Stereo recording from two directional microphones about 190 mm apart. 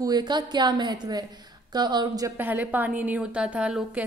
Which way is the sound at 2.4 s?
10° right (ahead or behind).